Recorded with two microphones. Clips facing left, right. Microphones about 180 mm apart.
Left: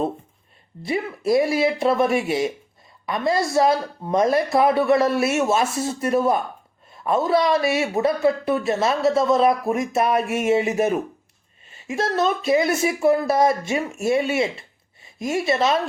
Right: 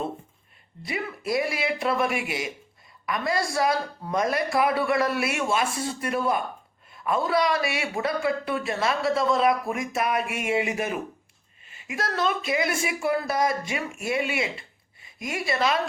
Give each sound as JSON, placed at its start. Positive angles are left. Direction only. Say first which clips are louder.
{"t": 0.9, "sound": "a man's voice", "louder": "left 7 dB", "side_deg": 25}